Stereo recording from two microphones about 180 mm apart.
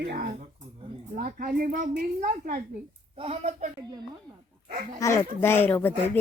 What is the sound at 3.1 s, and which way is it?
Speech, 35° right (ahead or behind).